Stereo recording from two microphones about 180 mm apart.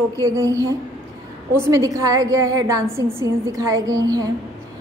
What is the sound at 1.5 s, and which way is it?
A woman's voice, 20° right (ahead or behind).